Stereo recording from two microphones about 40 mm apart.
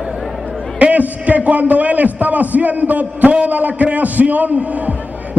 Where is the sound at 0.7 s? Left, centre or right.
Right.